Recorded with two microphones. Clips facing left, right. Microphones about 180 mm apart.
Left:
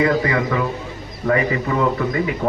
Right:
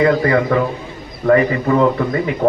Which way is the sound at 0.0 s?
45° right (ahead or behind).